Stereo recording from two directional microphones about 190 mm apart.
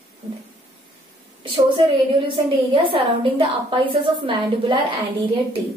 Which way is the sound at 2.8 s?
30° right (ahead or behind).